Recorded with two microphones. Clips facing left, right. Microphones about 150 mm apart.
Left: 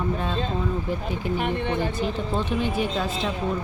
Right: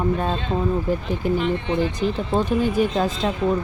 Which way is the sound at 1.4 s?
55° left (ahead or behind).